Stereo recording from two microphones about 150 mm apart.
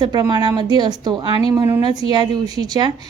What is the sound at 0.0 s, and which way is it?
A woman's voice, 30° right (ahead or behind).